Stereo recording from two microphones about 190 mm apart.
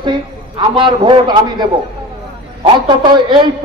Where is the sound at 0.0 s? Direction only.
25° right (ahead or behind).